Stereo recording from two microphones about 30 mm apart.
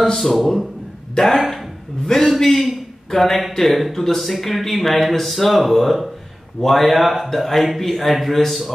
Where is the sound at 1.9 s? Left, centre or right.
Left.